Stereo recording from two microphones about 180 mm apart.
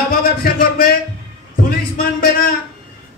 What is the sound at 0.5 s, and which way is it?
Speech, 55° left (ahead or behind).